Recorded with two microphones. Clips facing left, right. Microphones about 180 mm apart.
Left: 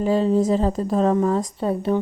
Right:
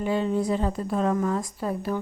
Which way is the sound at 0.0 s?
35° left (ahead or behind).